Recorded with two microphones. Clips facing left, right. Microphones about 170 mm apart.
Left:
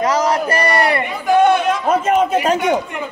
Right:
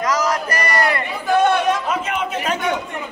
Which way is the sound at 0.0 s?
30° left (ahead or behind).